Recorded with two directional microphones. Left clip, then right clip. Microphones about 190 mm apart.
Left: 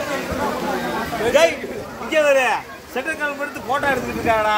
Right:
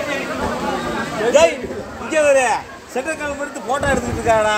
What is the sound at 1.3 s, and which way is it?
Chatter, 30° right (ahead or behind).